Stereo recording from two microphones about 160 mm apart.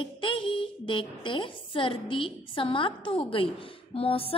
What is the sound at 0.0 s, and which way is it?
A woman's voice, 30° left (ahead or behind).